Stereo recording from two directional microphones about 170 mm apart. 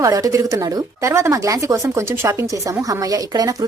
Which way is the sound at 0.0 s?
20° right (ahead or behind).